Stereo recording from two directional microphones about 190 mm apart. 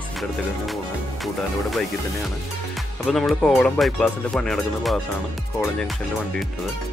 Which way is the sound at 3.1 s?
Centre (ahead or behind).